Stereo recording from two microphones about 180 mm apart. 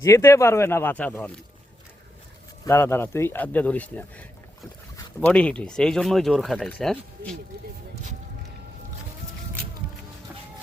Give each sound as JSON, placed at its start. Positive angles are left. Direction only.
{"t": 0.0, "sound": "speech", "side_deg": 15}
{"t": 2.6, "sound": "speech", "side_deg": 10}